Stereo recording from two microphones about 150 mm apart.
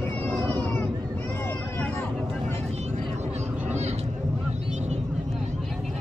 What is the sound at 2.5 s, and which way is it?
Vehicle, 45° right (ahead or behind).